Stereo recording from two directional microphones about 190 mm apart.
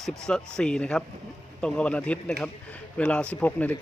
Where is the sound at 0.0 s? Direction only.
5° left (ahead or behind).